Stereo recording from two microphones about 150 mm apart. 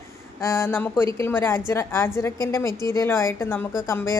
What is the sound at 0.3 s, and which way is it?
A woman's voice, 15° left (ahead or behind).